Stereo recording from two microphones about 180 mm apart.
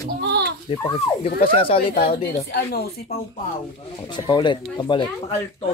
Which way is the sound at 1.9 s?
55° left (ahead or behind).